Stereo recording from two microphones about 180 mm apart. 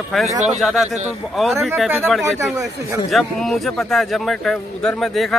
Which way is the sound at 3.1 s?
Centre (ahead or behind).